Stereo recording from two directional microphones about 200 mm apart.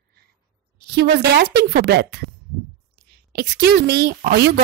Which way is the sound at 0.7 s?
55° right (ahead or behind).